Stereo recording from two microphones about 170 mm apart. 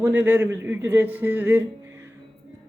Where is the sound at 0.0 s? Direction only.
10° right (ahead or behind).